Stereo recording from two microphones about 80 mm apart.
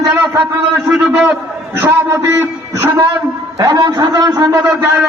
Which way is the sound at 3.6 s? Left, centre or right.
Right.